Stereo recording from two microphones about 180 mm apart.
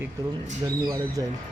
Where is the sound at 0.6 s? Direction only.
20° right (ahead or behind).